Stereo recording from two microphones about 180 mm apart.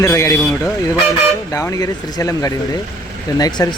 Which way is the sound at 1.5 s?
15° left (ahead or behind).